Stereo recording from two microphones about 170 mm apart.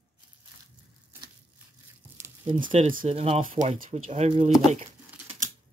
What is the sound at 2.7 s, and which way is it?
Speech, 35° right (ahead or behind).